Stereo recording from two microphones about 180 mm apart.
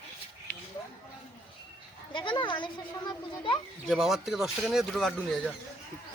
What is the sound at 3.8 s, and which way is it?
Speech, centre (ahead or behind).